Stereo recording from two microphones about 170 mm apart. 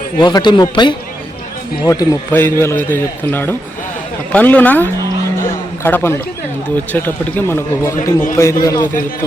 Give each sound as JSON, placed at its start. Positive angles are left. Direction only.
{"t": 0.2, "sound": "a man's voice", "side_deg": 25}